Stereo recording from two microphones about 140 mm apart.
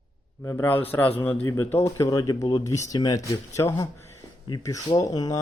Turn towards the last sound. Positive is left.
turn(degrees=25)  # may be behind; listen again after turning